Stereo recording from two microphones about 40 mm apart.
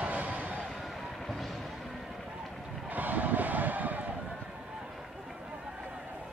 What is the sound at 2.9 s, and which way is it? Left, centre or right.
Vehicle, right.